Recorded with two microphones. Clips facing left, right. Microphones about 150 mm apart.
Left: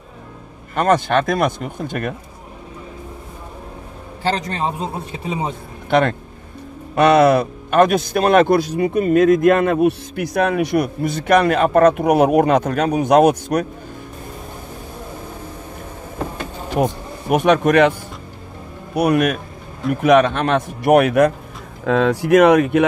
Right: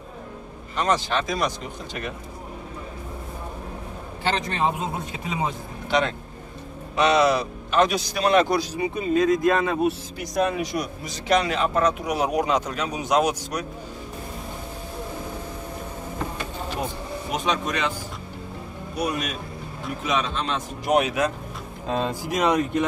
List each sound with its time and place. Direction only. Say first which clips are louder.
0.7 s a man's voice: left 7 dB; 55° left (ahead or behind)
4.2 s a man's voice: left 3 dB; 35° left (ahead or behind)
5.9 s a man's voice: left 7 dB; 55° left (ahead or behind)
16.3 s a sound: left 9 dB; 60° left (ahead or behind)
18.9 s a man's voice: left 11 dB; 60° left (ahead or behind)